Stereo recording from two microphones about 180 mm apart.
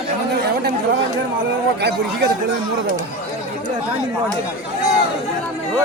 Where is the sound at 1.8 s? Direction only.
65° right (ahead or behind).